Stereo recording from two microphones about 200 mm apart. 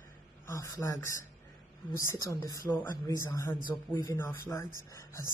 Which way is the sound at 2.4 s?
15° left (ahead or behind).